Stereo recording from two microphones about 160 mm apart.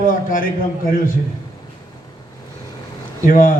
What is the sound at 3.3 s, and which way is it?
Speech, 55° left (ahead or behind).